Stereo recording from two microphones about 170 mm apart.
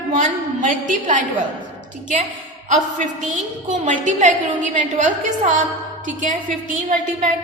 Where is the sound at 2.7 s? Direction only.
50° right (ahead or behind).